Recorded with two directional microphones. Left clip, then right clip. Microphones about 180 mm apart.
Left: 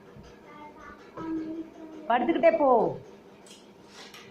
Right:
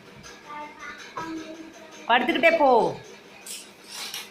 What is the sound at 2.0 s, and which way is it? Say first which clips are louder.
Speech: right 3 dB; 30° right (ahead or behind).